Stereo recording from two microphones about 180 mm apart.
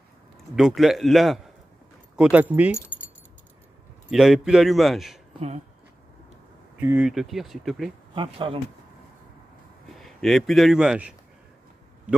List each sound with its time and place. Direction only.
0.6 s a man's voice: centre (ahead or behind)
4.1 s a man's voice: centre (ahead or behind)
6.8 s a man's voice: 10° right (ahead or behind)
8.1 s speech: 30° right (ahead or behind)
9.9 s a man's voice: centre (ahead or behind)